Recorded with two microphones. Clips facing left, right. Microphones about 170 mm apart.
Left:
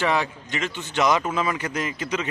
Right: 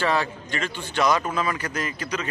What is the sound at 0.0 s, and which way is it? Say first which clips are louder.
A man's voice: even; 20° left (ahead or behind).